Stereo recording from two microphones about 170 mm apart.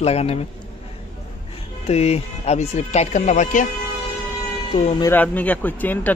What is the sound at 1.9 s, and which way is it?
Speech, 40° left (ahead or behind).